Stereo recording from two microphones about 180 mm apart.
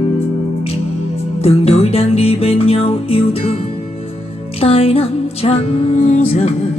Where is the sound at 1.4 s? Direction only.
35° left (ahead or behind).